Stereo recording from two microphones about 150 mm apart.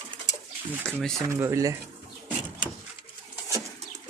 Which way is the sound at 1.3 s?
20° right (ahead or behind).